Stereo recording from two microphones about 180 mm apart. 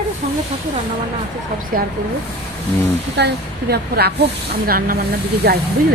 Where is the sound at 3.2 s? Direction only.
70° right (ahead or behind).